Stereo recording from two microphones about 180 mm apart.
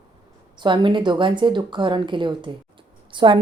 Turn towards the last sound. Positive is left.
turn(degrees=-25)  # may be behind; listen again after turning